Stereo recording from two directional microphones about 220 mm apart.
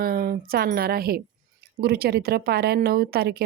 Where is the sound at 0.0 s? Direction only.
40° right (ahead or behind).